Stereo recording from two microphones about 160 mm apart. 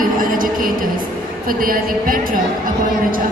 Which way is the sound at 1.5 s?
60° right (ahead or behind).